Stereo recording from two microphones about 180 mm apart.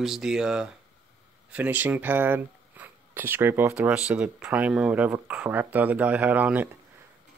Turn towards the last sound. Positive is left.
turn(degrees=-10)  # may be behind; listen again after turning